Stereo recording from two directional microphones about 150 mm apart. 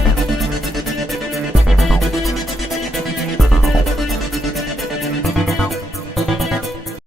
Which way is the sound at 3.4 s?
Centre (ahead or behind).